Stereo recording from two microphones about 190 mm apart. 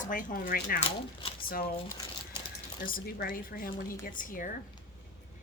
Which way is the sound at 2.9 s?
50° left (ahead or behind).